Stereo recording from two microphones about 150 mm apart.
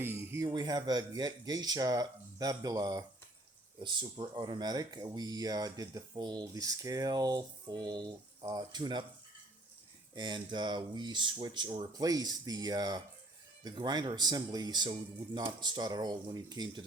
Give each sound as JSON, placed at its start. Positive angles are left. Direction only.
{"t": 0.0, "sound": "a sound", "side_deg": -15}
{"t": 0.4, "sound": "speech", "side_deg": -25}
{"t": 10.2, "sound": "speech", "side_deg": -30}